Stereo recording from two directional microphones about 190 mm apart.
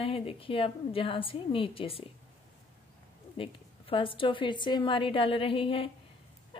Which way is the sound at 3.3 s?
25° left (ahead or behind).